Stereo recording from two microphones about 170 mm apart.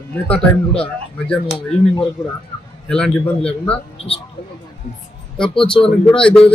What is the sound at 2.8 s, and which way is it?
Speech, 5° left (ahead or behind).